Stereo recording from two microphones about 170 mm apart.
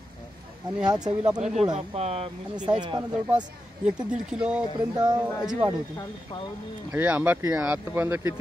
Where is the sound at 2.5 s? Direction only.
25° right (ahead or behind).